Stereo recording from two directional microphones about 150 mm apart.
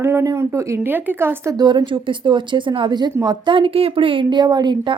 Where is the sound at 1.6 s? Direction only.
30° right (ahead or behind).